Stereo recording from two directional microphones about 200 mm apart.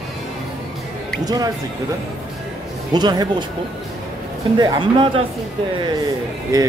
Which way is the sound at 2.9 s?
20° right (ahead or behind).